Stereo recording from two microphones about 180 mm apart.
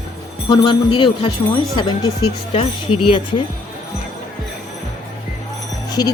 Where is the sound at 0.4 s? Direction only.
25° left (ahead or behind).